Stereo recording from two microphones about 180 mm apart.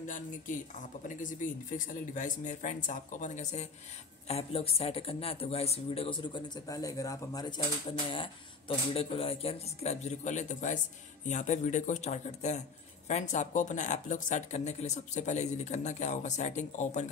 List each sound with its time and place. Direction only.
0.0 s speech: 45° left (ahead or behind)